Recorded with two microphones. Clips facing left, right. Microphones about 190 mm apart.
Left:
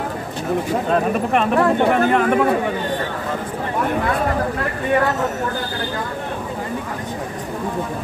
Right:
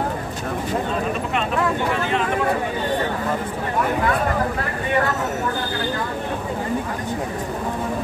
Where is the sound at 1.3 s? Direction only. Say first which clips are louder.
Left 7 dB; 55° left (ahead or behind).